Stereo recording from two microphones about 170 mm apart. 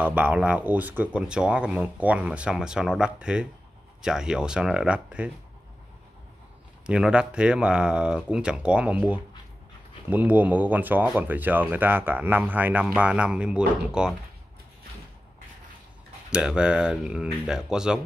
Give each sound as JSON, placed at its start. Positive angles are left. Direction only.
{"t": 0.0, "sound": "speech", "side_deg": -10}
{"t": 6.9, "sound": "speech", "side_deg": -5}
{"t": 16.3, "sound": "speech", "side_deg": -5}